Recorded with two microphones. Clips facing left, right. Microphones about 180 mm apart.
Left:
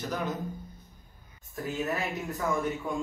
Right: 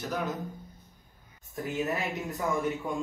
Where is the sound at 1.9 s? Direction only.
Centre (ahead or behind).